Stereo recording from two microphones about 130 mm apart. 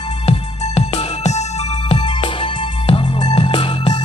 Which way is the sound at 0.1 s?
50° left (ahead or behind).